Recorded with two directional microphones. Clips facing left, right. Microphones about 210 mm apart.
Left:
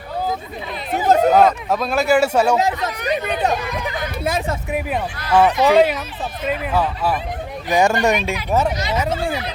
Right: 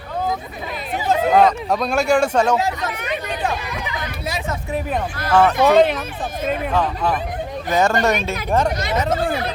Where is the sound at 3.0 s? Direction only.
40° left (ahead or behind).